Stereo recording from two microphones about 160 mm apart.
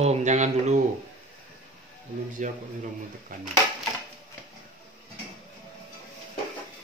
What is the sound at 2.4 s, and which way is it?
Speech, 50° right (ahead or behind).